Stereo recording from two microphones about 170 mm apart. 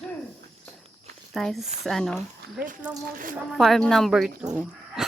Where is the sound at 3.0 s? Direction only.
55° right (ahead or behind).